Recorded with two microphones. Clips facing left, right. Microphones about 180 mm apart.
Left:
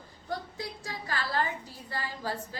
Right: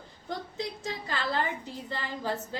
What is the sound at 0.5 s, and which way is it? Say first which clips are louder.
A woman's voice: right 4 dB; 20° right (ahead or behind).